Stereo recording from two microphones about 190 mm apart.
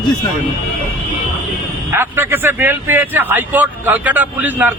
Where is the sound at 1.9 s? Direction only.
10° right (ahead or behind).